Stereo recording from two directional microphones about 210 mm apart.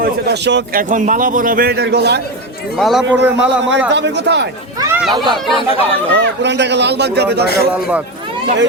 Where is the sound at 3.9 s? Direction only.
55° right (ahead or behind).